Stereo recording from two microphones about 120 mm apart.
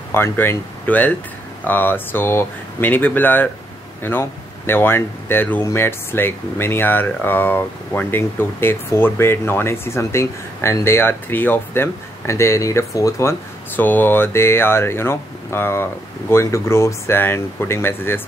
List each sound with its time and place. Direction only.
0.1 s speech: 20° left (ahead or behind)